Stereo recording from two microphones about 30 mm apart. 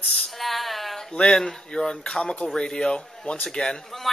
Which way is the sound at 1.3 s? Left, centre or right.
Centre.